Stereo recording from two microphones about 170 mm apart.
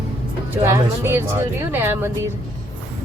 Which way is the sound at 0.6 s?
15° right (ahead or behind).